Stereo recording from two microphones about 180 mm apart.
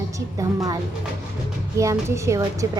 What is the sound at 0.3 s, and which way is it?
Speech, 20° right (ahead or behind).